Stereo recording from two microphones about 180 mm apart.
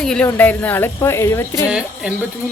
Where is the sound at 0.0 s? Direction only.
5° left (ahead or behind).